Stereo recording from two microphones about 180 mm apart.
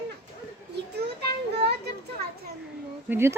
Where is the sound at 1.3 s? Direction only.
65° right (ahead or behind).